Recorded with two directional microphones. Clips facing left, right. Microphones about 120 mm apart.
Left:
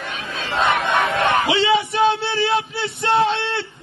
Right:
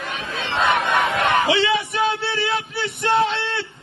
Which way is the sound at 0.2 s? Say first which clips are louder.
Even; 25° right (ahead or behind).